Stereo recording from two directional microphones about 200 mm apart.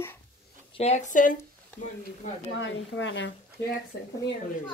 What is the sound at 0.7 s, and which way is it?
Speech, 35° left (ahead or behind).